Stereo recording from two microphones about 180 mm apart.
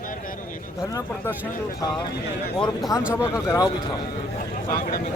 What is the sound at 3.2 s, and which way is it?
Speech, 20° left (ahead or behind).